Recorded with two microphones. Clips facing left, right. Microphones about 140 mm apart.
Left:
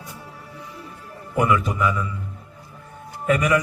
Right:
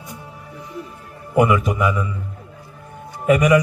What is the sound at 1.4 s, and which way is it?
Speech, 15° right (ahead or behind).